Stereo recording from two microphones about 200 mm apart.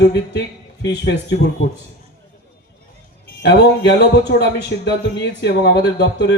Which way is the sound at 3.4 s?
55° left (ahead or behind).